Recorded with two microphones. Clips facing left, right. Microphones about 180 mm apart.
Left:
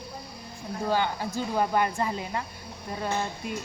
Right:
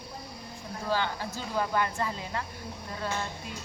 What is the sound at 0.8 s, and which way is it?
Speech, 15° left (ahead or behind).